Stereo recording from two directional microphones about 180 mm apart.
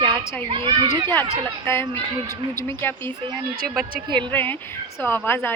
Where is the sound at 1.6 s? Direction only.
15° left (ahead or behind).